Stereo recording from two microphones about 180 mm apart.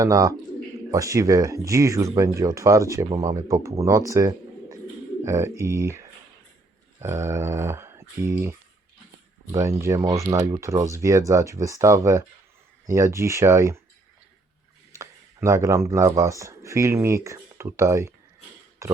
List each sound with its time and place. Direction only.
0.0 s speech: 20° right (ahead or behind)
14.9 s speech: 15° right (ahead or behind)